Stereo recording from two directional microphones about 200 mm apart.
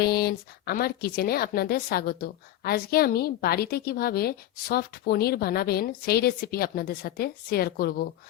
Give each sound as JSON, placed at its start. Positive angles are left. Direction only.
{"t": 0.0, "sound": "a woman's voice", "side_deg": 50}